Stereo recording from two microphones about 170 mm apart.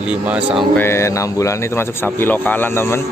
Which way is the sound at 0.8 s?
15° left (ahead or behind).